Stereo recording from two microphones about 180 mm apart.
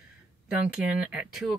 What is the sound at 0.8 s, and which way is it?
Speech, 5° right (ahead or behind).